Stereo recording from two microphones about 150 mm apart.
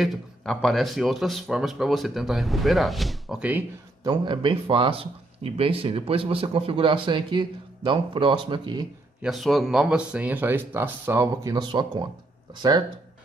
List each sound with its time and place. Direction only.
0.0 s a man's voice: centre (ahead or behind)
4.0 s speech: 30° right (ahead or behind)
9.2 s speech: centre (ahead or behind); by 12.1 s 30° right (ahead or behind)